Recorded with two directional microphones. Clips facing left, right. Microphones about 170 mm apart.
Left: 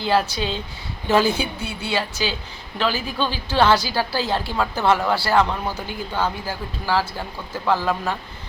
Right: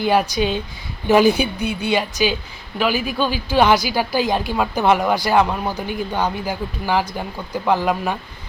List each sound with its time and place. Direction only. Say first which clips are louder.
0.0 s a woman's voice: right 3 dB; 15° right (ahead or behind)